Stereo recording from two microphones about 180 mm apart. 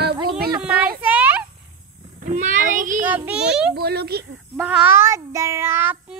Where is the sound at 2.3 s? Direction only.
45° right (ahead or behind).